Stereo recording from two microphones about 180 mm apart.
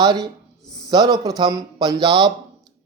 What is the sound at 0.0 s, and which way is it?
Speech, 25° right (ahead or behind).